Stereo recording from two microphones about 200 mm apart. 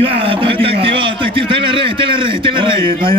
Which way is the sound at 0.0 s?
25° right (ahead or behind).